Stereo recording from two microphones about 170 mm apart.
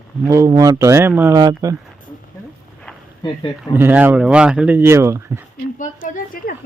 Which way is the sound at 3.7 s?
10° right (ahead or behind).